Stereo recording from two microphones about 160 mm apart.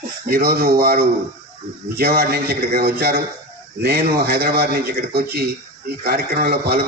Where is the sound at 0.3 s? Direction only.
75° right (ahead or behind).